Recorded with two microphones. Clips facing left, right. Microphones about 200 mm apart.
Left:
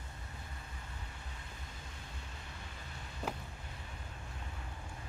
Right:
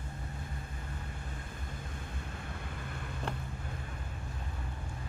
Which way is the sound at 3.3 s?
5° left (ahead or behind).